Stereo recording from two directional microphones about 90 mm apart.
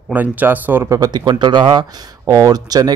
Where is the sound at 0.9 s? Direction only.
50° right (ahead or behind).